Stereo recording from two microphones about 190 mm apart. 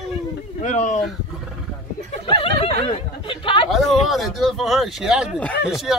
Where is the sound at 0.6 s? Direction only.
40° left (ahead or behind).